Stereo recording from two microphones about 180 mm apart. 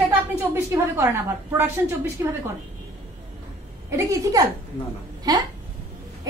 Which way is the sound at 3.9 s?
20° right (ahead or behind).